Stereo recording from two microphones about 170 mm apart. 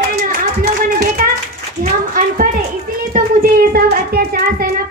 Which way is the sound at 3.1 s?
55° right (ahead or behind).